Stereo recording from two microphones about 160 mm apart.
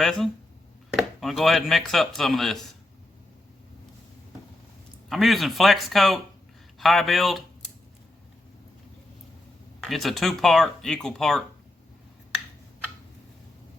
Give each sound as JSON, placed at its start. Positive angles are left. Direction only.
{"t": 0.0, "sound": "speech", "side_deg": 0}
{"t": 5.0, "sound": "speech", "side_deg": 0}
{"t": 9.8, "sound": "speech", "side_deg": 0}